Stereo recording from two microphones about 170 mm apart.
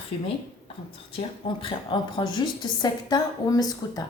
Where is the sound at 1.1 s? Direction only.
30° left (ahead or behind).